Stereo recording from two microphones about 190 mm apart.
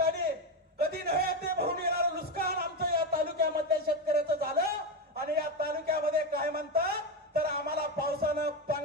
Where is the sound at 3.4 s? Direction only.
55° right (ahead or behind).